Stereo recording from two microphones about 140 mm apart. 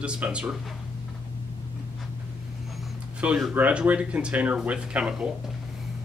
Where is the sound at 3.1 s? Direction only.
10° right (ahead or behind).